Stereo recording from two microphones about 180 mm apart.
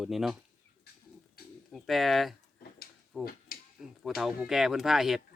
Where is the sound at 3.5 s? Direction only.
55° left (ahead or behind).